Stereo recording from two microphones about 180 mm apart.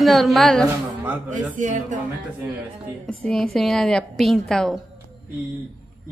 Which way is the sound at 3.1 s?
5° left (ahead or behind).